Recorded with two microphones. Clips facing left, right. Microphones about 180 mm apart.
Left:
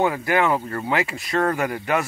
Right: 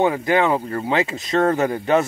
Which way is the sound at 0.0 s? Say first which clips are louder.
Right 3 dB; 20° right (ahead or behind).